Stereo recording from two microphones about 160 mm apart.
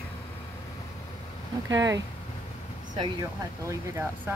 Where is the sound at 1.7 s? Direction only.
25° right (ahead or behind).